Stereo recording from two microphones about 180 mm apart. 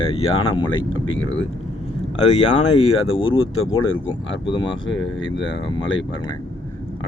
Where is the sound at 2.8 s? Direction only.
30° left (ahead or behind).